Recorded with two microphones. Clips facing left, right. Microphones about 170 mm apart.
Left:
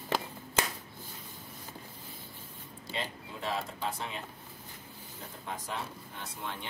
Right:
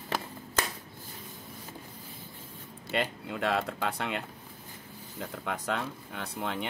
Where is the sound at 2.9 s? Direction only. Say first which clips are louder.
Right 7 dB; 70° right (ahead or behind).